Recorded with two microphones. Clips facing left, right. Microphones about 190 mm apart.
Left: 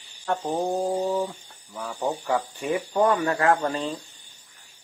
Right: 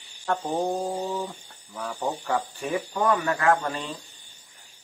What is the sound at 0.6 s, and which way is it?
Speech, 5° left (ahead or behind).